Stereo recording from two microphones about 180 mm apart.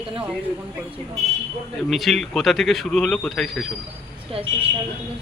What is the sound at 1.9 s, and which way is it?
A man's voice, centre (ahead or behind).